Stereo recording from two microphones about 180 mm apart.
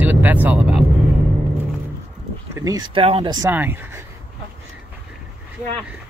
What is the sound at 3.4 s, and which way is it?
Speech, 10° right (ahead or behind).